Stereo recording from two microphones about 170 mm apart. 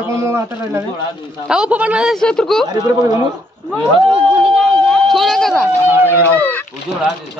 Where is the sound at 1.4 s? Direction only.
5° right (ahead or behind).